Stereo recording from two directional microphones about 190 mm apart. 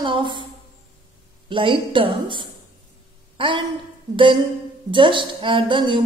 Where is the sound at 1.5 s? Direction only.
25° right (ahead or behind).